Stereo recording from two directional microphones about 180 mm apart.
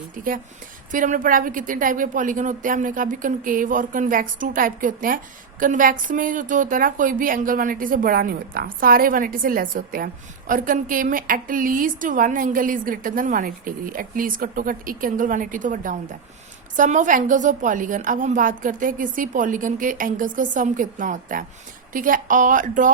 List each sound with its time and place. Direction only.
0.9 s speech: 45° right (ahead or behind)